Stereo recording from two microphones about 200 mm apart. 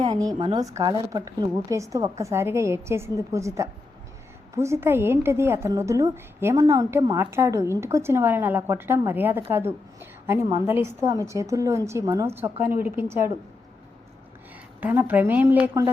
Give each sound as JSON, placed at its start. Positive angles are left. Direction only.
{"t": 0.0, "sound": "a woman's voice", "side_deg": -20}
{"t": 14.8, "sound": "a woman's voice", "side_deg": -10}